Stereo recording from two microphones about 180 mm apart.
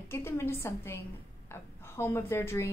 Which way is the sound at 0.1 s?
15° left (ahead or behind).